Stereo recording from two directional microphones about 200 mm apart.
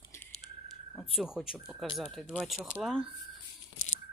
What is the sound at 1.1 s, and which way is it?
Speech, centre (ahead or behind).